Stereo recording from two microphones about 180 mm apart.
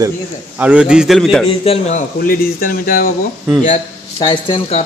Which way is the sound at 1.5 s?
35° left (ahead or behind).